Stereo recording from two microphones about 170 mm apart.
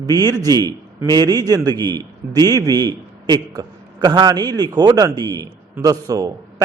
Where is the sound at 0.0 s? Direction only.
25° right (ahead or behind).